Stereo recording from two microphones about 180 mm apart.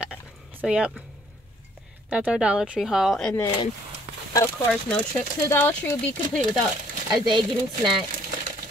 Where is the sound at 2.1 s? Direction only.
5° right (ahead or behind).